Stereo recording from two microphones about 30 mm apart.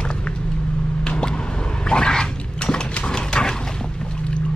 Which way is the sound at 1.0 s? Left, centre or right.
Left.